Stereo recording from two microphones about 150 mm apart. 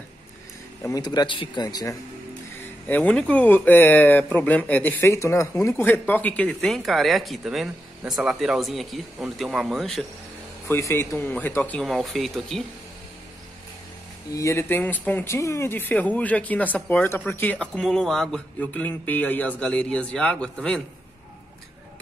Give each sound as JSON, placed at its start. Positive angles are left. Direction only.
{"t": 0.8, "sound": "speech", "side_deg": 25}
{"t": 2.6, "sound": "speech", "side_deg": 10}
{"t": 10.7, "sound": "speech", "side_deg": 20}
{"t": 14.3, "sound": "speech", "side_deg": 20}